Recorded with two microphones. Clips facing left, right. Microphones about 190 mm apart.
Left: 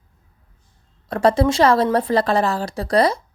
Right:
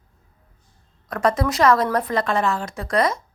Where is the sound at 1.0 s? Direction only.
30° left (ahead or behind).